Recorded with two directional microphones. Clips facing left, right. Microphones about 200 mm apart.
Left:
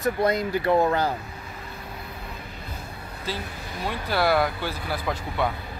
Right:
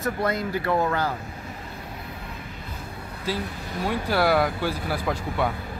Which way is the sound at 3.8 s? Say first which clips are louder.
Right 2 dB; 10° right (ahead or behind).